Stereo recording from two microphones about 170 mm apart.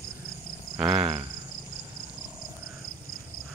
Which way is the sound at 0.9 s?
35° right (ahead or behind).